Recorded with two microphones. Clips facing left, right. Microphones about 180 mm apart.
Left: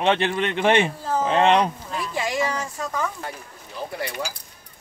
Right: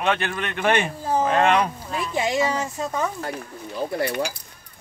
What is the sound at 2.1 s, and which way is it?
Speech, 20° right (ahead or behind).